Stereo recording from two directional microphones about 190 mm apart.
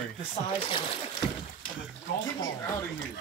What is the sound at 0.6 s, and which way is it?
Speech, 30° left (ahead or behind).